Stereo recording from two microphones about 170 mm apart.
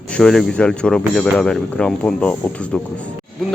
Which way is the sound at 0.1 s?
5° left (ahead or behind).